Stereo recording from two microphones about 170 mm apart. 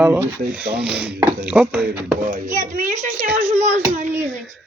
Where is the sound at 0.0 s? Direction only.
10° right (ahead or behind).